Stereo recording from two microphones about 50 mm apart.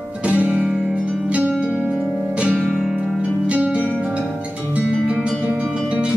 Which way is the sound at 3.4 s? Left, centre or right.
Right.